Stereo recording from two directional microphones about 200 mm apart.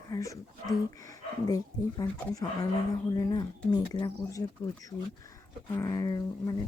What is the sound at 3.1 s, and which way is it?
Speech, 20° left (ahead or behind).